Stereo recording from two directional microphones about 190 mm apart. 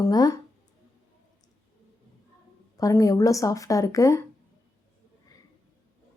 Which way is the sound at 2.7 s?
20° left (ahead or behind).